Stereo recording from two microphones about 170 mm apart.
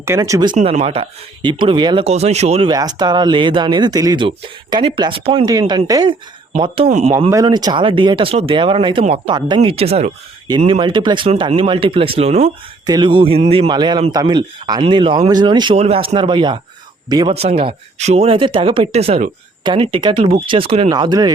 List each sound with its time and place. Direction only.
0.0 s speech: 15° right (ahead or behind)
0.5 s speech: 40° right (ahead or behind)
2.6 s speech: 25° right (ahead or behind)
5.5 s speech: 25° right (ahead or behind)
6.6 s speech: 35° right (ahead or behind)
7.3 s speech: 20° right (ahead or behind); by 12.5 s 35° right (ahead or behind)
12.8 s speech: 25° right (ahead or behind)
17.3 s speech: 35° right (ahead or behind)
20.9 s speech: 25° right (ahead or behind)